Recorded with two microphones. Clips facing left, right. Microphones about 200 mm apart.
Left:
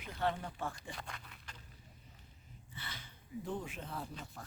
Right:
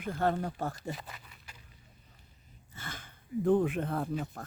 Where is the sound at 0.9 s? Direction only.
5° right (ahead or behind).